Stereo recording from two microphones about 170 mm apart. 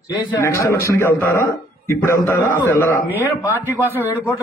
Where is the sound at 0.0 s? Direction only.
15° left (ahead or behind).